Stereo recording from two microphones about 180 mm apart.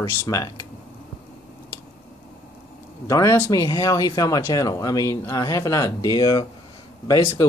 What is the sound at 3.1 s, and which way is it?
Speech, 15° left (ahead or behind).